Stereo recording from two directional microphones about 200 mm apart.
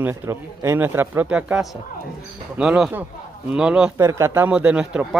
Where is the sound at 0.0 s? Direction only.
15° right (ahead or behind).